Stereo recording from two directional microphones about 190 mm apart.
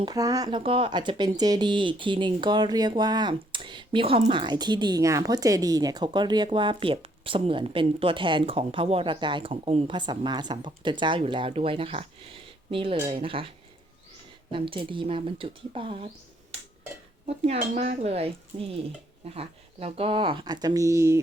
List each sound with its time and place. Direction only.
0.0 s speech: 20° right (ahead or behind)
14.5 s speech: 25° right (ahead or behind)
17.2 s speech: 35° right (ahead or behind); by 21.2 s 15° right (ahead or behind)